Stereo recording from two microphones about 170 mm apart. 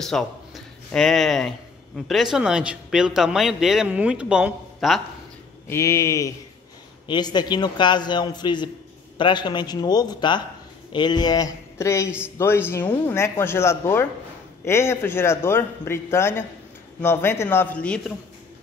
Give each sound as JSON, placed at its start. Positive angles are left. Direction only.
{"t": 0.0, "sound": "speech", "side_deg": 0}
{"t": 5.7, "sound": "a man's voice", "side_deg": 15}